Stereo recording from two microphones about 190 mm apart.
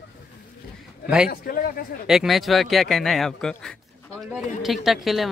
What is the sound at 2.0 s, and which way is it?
Speech, centre (ahead or behind).